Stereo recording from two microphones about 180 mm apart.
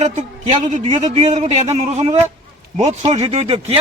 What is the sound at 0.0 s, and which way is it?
A man's voice, 40° right (ahead or behind).